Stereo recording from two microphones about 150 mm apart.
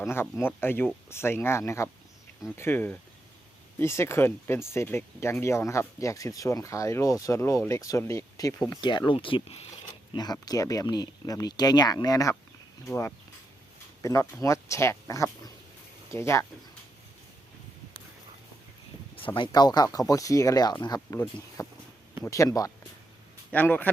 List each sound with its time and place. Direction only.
0.0 s speech: 15° left (ahead or behind); by 9.6 s 40° left (ahead or behind)
10.1 s speech: 25° left (ahead or behind)
19.1 s speech: 35° left (ahead or behind)
23.5 s speech: 10° left (ahead or behind)